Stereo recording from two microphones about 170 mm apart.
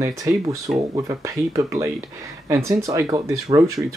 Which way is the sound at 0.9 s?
20° right (ahead or behind).